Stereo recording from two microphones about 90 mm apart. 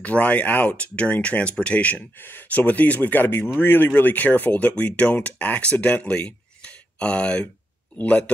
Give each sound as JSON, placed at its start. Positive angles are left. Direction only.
{"t": 0.0, "sound": "speech", "side_deg": 15}